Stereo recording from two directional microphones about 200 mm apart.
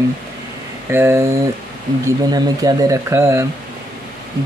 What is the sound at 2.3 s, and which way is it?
Speech, 20° right (ahead or behind).